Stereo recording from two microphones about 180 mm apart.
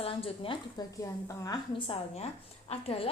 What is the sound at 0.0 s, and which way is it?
Speech, 30° left (ahead or behind).